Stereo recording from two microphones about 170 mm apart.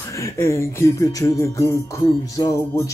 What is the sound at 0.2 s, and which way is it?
Speech, 15° left (ahead or behind).